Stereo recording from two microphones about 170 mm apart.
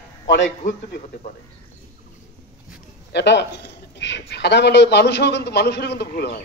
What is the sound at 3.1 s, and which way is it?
Speech, 90° left.